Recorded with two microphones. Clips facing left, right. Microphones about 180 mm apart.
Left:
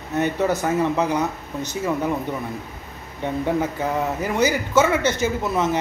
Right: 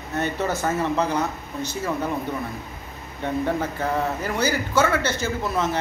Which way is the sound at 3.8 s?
15° left (ahead or behind).